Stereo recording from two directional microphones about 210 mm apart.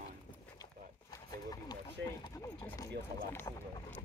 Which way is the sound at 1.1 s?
20° left (ahead or behind).